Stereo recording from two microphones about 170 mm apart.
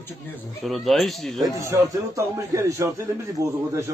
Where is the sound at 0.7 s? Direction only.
Centre (ahead or behind).